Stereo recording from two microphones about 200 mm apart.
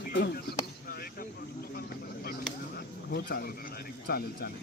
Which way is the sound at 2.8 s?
50° left (ahead or behind).